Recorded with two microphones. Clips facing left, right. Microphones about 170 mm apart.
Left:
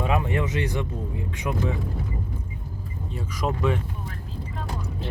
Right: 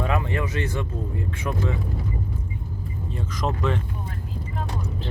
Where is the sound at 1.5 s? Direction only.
5° left (ahead or behind).